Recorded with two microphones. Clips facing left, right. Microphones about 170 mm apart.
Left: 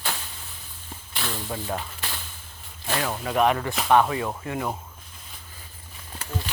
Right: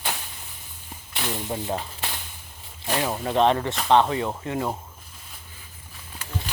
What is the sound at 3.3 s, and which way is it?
Speech, 25° right (ahead or behind).